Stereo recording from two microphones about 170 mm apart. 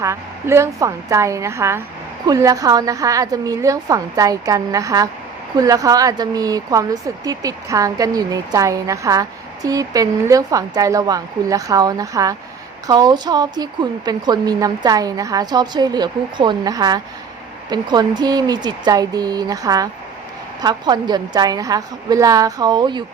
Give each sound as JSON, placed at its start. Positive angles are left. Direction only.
{"t": 0.0, "sound": "a woman's voice", "side_deg": -15}